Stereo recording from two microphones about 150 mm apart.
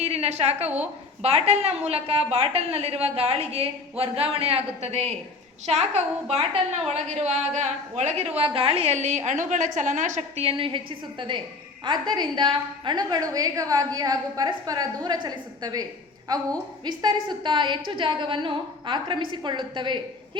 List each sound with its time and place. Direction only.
0.0 s a woman's voice: 45° right (ahead or behind)